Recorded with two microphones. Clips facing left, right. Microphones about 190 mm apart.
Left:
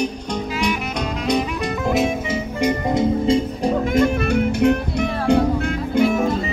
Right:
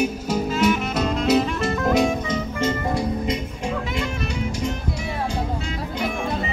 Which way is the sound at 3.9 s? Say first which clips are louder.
Left 10 dB; 50° left (ahead or behind).